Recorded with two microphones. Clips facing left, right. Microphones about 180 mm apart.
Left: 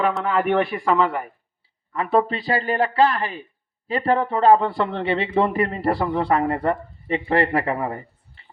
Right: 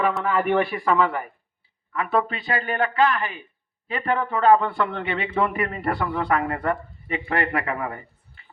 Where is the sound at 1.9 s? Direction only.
35° left (ahead or behind).